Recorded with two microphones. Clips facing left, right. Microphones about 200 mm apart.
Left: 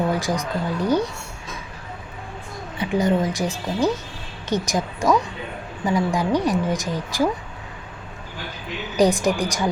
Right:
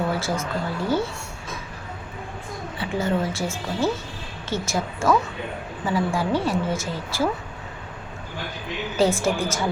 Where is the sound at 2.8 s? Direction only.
15° left (ahead or behind).